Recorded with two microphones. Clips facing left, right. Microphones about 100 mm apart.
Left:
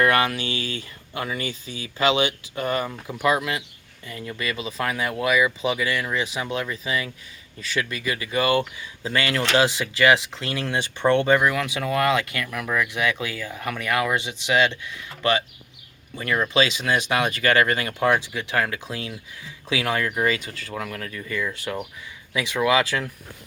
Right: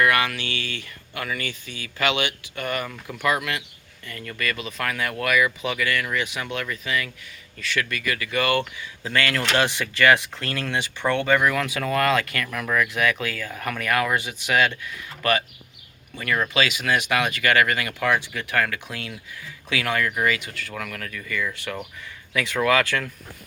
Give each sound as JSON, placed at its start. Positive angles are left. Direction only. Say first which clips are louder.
{"t": 0.0, "sound": "speech", "louder": "left 1 dB", "side_deg": 30}